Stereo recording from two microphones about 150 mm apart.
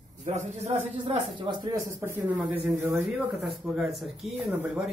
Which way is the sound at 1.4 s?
30° right (ahead or behind).